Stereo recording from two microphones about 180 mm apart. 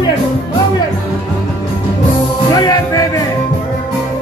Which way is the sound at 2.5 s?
20° left (ahead or behind).